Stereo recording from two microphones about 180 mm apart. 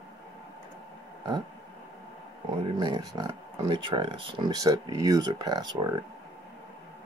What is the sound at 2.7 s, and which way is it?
Speech, 20° right (ahead or behind).